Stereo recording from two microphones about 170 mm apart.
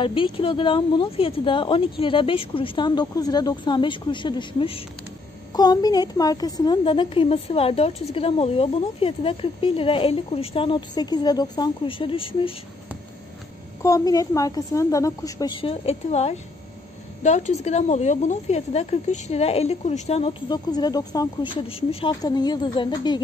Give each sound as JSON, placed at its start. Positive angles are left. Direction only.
{"t": 0.0, "sound": "a woman's voice", "side_deg": 30}
{"t": 13.8, "sound": "a woman's voice", "side_deg": 20}
{"t": 20.4, "sound": "speech", "side_deg": 25}